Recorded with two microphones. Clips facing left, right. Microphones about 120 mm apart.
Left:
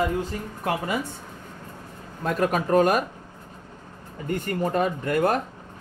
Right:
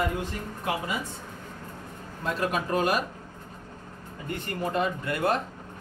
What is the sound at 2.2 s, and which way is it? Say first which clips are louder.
Speech: left 5 dB; 50° left (ahead or behind).